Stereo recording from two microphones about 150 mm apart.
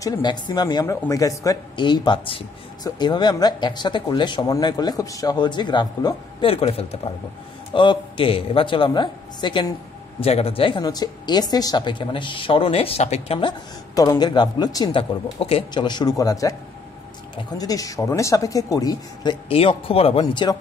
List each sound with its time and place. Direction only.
0.0 s a woman's voice: 25° left (ahead or behind); by 13.4 s 45° left (ahead or behind)
13.4 s speech: 30° left (ahead or behind)
19.5 s a woman's voice: 40° left (ahead or behind)